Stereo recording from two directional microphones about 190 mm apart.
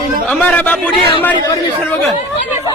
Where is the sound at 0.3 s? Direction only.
5° left (ahead or behind).